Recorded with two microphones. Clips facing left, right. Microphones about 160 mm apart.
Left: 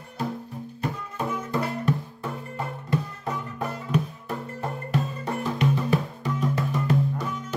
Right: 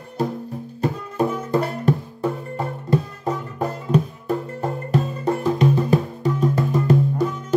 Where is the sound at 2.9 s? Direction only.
35° right (ahead or behind).